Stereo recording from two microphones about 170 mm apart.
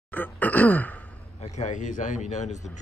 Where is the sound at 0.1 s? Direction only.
10° left (ahead or behind).